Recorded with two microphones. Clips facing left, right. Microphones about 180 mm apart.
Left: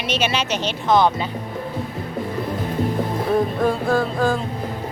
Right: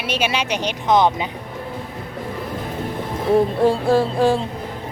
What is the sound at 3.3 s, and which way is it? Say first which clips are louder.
Music: right 4 dB; 30° right (ahead or behind).